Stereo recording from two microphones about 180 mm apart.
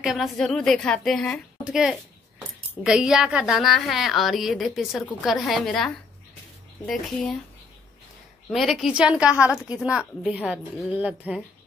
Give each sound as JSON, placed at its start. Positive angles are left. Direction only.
{"t": 0.0, "sound": "a woman's voice", "side_deg": 0}
{"t": 8.5, "sound": "a woman's voice", "side_deg": 0}